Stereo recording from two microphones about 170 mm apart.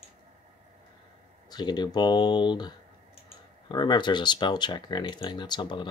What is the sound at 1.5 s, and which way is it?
Speech, 25° left (ahead or behind).